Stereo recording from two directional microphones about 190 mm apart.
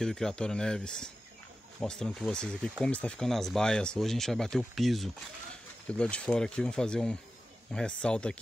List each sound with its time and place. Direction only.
0.0 s speech: 5° left (ahead or behind)